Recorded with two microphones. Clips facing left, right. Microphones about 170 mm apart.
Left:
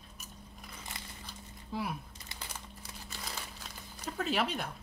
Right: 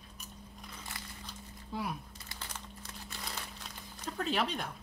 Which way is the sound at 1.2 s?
Centre (ahead or behind).